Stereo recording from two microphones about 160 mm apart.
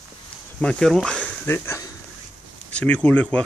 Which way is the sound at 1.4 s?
15° left (ahead or behind).